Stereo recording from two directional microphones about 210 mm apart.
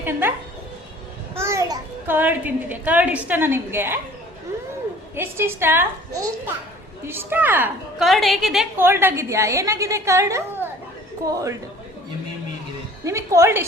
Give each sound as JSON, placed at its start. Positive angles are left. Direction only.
{"t": 0.0, "sound": "a child's voice", "side_deg": -10}
{"t": 1.4, "sound": "a child's voice", "side_deg": -15}
{"t": 5.1, "sound": "a child's voice", "side_deg": -10}
{"t": 13.1, "sound": "a child's voice", "side_deg": -15}